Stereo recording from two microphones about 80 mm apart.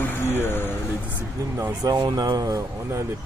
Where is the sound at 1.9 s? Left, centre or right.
Right.